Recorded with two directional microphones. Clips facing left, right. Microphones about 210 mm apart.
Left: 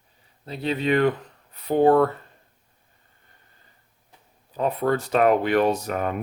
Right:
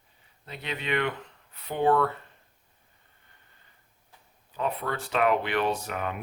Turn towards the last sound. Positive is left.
turn(degrees=40)  # may be behind; listen again after turning